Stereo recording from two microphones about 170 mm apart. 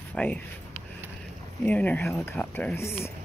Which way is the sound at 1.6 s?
10° left (ahead or behind).